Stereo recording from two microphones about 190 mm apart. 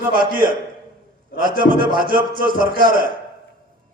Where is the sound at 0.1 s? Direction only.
50° right (ahead or behind).